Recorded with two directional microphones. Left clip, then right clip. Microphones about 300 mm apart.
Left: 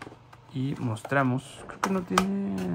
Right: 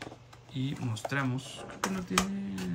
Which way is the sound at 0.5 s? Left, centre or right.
Centre.